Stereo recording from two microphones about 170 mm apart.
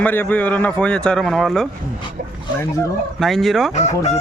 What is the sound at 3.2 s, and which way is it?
Speech, centre (ahead or behind).